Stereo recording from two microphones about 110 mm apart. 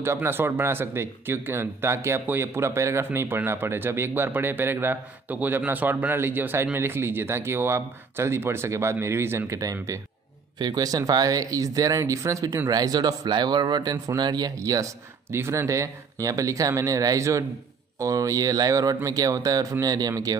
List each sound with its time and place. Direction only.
0.0 s speech: 20° right (ahead or behind)